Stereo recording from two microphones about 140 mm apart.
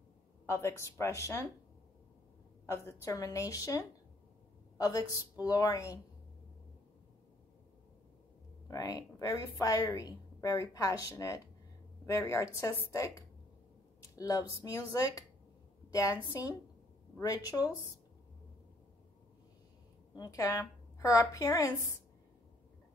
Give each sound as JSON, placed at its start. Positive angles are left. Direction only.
{"t": 0.5, "sound": "a woman's voice", "side_deg": 20}
{"t": 2.6, "sound": "a woman's voice", "side_deg": 20}
{"t": 8.6, "sound": "a woman's voice", "side_deg": 25}
{"t": 20.2, "sound": "a woman's voice", "side_deg": 25}